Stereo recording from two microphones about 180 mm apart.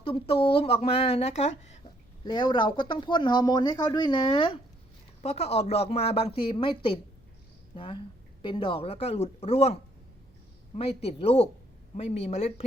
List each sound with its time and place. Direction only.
0.0 s a woman's voice: 30° left (ahead or behind)
2.2 s a woman's voice: 25° left (ahead or behind)
10.8 s a woman's voice: 35° left (ahead or behind)